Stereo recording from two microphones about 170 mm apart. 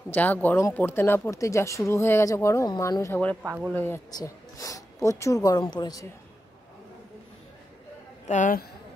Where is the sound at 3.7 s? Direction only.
10° left (ahead or behind).